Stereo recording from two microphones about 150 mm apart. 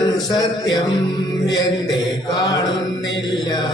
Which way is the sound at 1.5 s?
25° left (ahead or behind).